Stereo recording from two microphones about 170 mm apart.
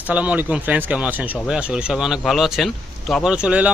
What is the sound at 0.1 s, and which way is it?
Speech, 10° right (ahead or behind).